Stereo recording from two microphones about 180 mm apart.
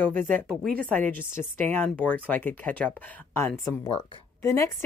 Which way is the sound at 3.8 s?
20° left (ahead or behind).